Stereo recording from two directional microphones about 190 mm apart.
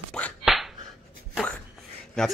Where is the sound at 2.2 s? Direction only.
5° left (ahead or behind).